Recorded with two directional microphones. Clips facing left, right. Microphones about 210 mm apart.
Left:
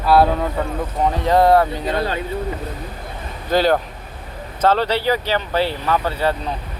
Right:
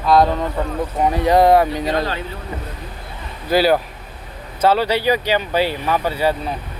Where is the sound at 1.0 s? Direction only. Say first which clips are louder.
Right 1 dB; 10° right (ahead or behind).